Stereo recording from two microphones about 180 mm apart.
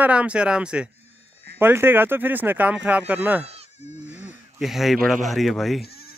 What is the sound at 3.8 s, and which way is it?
Goat, 40° left (ahead or behind).